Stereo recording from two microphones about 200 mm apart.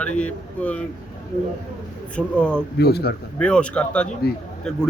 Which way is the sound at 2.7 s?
55° left (ahead or behind).